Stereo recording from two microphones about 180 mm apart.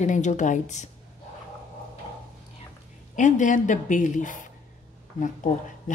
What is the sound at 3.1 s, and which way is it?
A woman's voice, 45° left (ahead or behind).